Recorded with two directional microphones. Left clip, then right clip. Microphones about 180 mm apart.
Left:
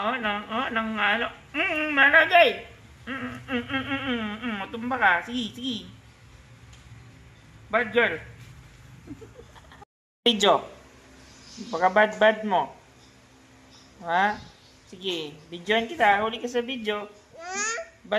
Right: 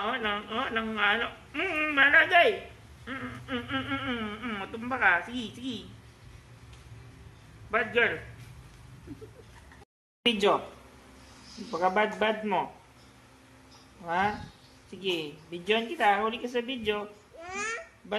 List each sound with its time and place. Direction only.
0.0 s speech: 20° left (ahead or behind)
7.7 s speech: 20° left (ahead or behind)
10.2 s speech: 20° left (ahead or behind)
11.7 s a woman's voice: 20° left (ahead or behind)
15.7 s a woman's voice: 15° left (ahead or behind)
17.4 s babbling: centre (ahead or behind)